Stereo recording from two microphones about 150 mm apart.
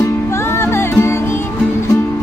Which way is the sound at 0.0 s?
15° left (ahead or behind).